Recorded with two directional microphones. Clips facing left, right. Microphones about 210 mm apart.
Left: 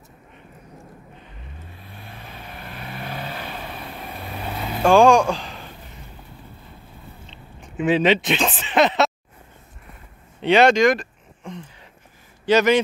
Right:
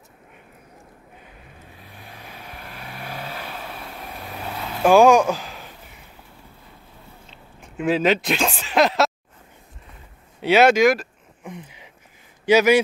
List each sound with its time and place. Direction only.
2.0 s vehicle: 5° right (ahead or behind)
4.8 s a sound: 5° right (ahead or behind)
7.2 s speech: centre (ahead or behind)
10.4 s a man's voice: 5° right (ahead or behind)